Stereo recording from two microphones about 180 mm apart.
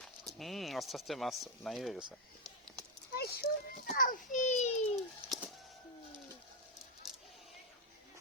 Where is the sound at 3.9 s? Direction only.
45° left (ahead or behind).